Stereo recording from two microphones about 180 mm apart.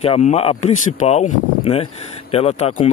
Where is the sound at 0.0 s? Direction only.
35° left (ahead or behind).